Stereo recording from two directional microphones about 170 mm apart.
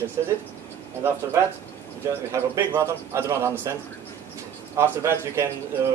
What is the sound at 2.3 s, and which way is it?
A man's voice, 15° right (ahead or behind).